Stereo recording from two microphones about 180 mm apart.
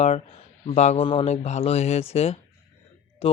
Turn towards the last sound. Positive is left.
turn(degrees=35)  # may be behind; listen again after turning